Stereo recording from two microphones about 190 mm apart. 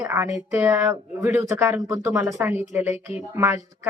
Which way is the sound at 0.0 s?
10° right (ahead or behind).